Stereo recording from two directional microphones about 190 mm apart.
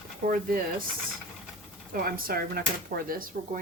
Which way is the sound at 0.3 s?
50° right (ahead or behind).